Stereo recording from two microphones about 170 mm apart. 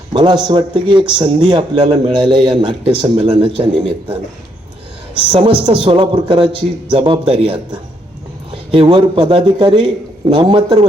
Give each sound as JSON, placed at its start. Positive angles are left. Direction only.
{"t": 0.1, "sound": "a man's voice", "side_deg": -25}
{"t": 5.3, "sound": "a man's voice", "side_deg": -30}